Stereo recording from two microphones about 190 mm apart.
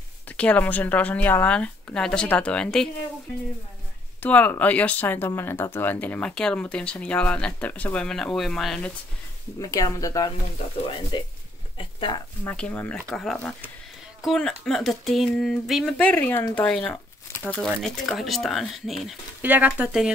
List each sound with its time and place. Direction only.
0.3 s speech: 10° left (ahead or behind)
4.2 s speech: 10° left (ahead or behind)
9.6 s speech: 20° left (ahead or behind)
11.8 s speech: 25° left (ahead or behind)
12.4 s speech: 5° left (ahead or behind)